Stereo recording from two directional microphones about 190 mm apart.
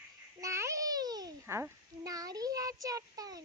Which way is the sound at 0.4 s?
15° right (ahead or behind).